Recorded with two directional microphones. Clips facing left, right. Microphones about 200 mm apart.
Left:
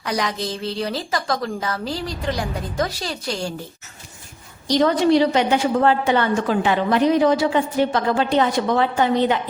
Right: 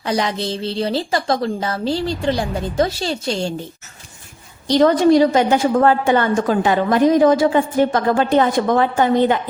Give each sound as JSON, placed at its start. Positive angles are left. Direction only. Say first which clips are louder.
{"t": 0.0, "sound": "a woman's voice", "louder": "right 4 dB", "side_deg": -25}
{"t": 4.8, "sound": "a woman's voice", "louder": "right 4 dB", "side_deg": -45}